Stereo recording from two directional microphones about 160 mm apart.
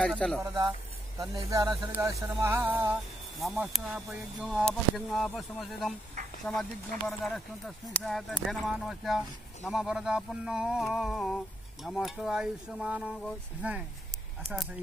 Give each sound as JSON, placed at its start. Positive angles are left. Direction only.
{"t": 0.0, "sound": "speech", "side_deg": 5}
{"t": 0.4, "sound": "speech", "side_deg": -25}
{"t": 3.3, "sound": "speech", "side_deg": 0}